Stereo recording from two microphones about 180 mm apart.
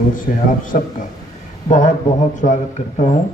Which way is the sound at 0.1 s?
50° left (ahead or behind).